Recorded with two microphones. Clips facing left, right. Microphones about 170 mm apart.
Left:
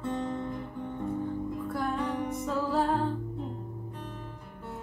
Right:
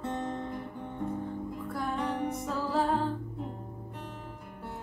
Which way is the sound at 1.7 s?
Centre (ahead or behind).